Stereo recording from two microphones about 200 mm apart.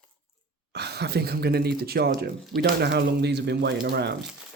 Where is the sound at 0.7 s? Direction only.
55° right (ahead or behind).